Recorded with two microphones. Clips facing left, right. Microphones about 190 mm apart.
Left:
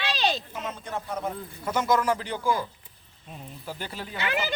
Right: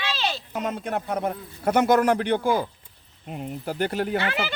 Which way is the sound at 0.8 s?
60° right (ahead or behind).